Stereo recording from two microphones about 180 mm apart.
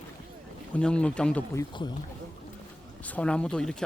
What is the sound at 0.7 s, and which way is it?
Speech, 5° left (ahead or behind).